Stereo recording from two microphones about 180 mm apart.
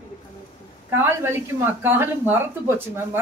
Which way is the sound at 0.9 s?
15° right (ahead or behind).